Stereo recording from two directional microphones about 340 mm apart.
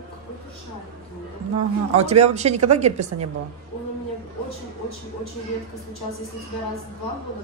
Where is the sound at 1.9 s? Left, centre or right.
Centre.